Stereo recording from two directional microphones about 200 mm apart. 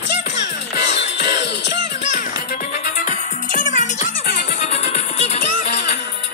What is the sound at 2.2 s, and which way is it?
Music, 40° left (ahead or behind).